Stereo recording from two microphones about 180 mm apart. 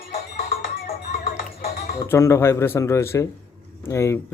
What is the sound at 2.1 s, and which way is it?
A man's voice, 15° left (ahead or behind).